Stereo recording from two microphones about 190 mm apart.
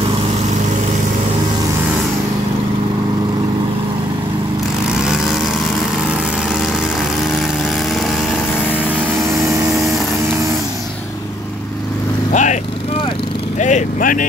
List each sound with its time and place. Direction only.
12.3 s vehicle: 40° left (ahead or behind)
13.6 s vehicle: 40° left (ahead or behind)